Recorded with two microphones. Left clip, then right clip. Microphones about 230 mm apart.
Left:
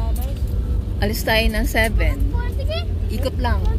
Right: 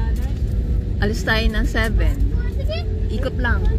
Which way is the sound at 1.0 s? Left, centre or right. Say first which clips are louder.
Left 2 dB; centre.